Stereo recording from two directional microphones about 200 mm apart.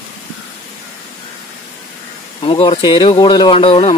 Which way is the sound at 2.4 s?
25° left (ahead or behind).